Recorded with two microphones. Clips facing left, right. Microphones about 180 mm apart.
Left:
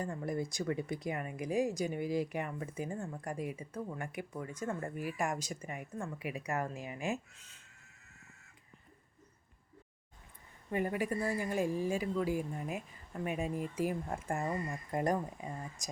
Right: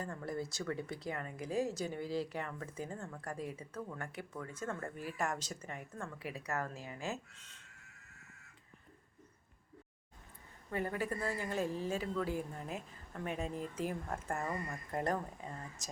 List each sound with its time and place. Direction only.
0.0 s speech: 15° left (ahead or behind)
10.7 s speech: 15° left (ahead or behind)